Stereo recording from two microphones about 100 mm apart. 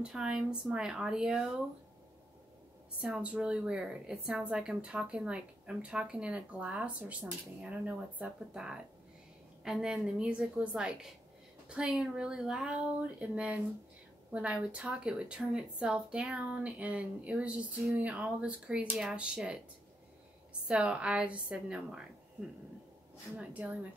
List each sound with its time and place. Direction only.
0.0 s a woman's voice: 5° right (ahead or behind)
3.0 s a woman's voice: 10° right (ahead or behind)
20.6 s a woman's voice: 10° right (ahead or behind)
23.3 s a woman's voice: 15° right (ahead or behind)